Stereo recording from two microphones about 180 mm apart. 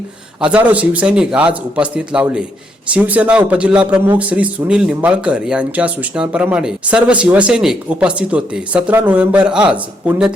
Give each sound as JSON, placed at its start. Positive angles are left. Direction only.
{"t": 0.4, "sound": "speech", "side_deg": -5}